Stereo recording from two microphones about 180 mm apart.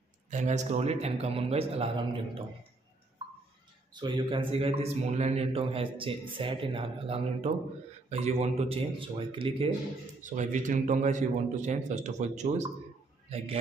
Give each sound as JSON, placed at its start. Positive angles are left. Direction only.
{"t": 0.3, "sound": "a man's voice", "side_deg": -40}
{"t": 3.9, "sound": "a man's voice", "side_deg": -25}
{"t": 10.3, "sound": "a man's voice", "side_deg": -45}